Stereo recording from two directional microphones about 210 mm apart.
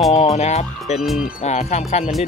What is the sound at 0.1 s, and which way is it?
Speech, 30° left (ahead or behind).